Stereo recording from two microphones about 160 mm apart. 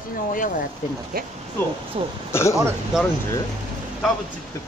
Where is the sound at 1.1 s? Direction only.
65° right (ahead or behind).